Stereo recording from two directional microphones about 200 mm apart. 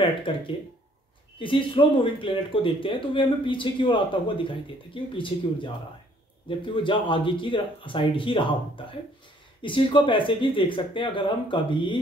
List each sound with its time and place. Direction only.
1.4 s speech: 25° left (ahead or behind)